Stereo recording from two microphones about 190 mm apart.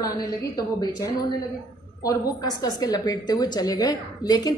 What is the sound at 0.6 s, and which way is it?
A woman's voice, 20° left (ahead or behind).